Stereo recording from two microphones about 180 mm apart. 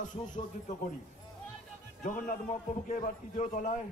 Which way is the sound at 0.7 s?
45° left (ahead or behind).